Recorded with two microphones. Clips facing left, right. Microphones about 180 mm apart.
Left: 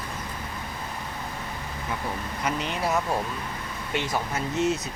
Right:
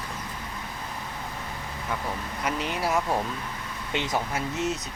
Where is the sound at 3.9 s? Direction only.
20° right (ahead or behind).